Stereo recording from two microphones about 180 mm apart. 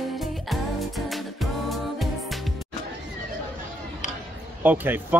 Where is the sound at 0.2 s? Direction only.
Centre (ahead or behind).